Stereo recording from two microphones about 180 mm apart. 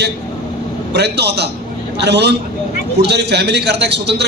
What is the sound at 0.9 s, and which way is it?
A man's voice, 70° right (ahead or behind).